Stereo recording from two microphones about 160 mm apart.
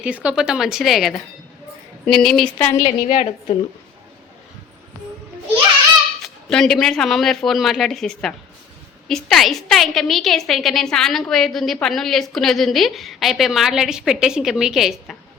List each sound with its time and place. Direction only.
0.0 s a woman's voice: 10° right (ahead or behind); by 2.8 s 10° left (ahead or behind)
2.8 s a woman's voice: 50° left (ahead or behind)
6.2 s a woman's voice: 5° left (ahead or behind)